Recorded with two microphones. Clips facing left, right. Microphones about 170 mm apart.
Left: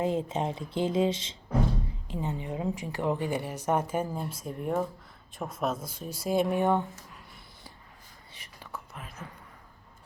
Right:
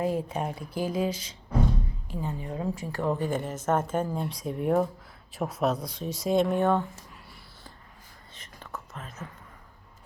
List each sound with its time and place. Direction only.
0.0 s a woman's voice: 20° left (ahead or behind)
8.3 s whispering: 10° left (ahead or behind)